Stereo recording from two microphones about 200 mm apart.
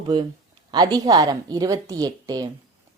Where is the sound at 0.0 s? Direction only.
25° right (ahead or behind).